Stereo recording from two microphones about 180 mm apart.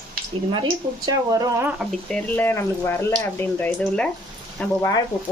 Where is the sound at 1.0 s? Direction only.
20° right (ahead or behind).